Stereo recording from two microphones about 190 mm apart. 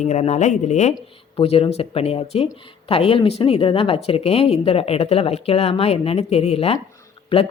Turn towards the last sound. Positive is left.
turn(degrees=30)  # may be behind; listen again after turning